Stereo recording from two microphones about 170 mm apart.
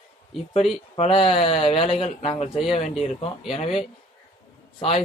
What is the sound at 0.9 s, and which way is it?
Speech, 35° left (ahead or behind).